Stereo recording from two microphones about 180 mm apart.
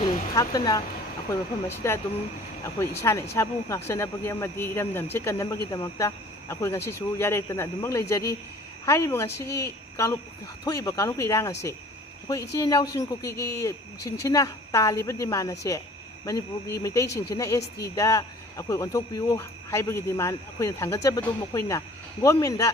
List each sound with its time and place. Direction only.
0.0 s a sound: 20° left (ahead or behind)
1.3 s a woman's voice: 15° left (ahead or behind)
12.5 s a woman's voice: 20° left (ahead or behind)